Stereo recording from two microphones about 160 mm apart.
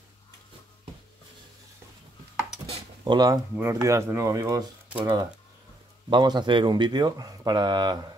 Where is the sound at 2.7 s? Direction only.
25° right (ahead or behind).